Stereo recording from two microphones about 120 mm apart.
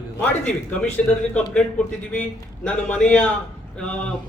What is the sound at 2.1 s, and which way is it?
A man's voice, 10° left (ahead or behind).